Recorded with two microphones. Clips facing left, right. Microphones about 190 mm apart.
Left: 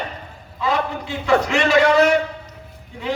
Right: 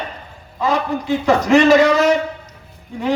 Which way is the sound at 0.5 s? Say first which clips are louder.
Right 3 dB; 40° right (ahead or behind).